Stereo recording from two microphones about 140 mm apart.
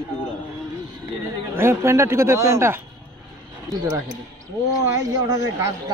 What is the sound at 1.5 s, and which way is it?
Speech, 15° right (ahead or behind).